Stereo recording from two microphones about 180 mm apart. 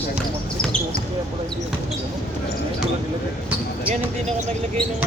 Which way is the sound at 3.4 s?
10° right (ahead or behind).